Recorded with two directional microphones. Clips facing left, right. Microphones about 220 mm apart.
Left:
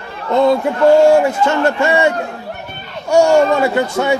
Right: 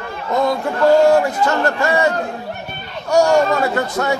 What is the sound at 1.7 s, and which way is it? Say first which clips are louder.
A man's voice: left 3 dB; 25° left (ahead or behind).